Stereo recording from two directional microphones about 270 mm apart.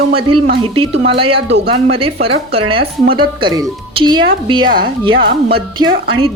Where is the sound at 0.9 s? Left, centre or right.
Right.